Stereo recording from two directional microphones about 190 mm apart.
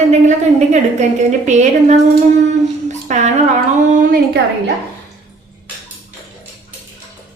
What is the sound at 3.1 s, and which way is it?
A woman's voice, 40° right (ahead or behind).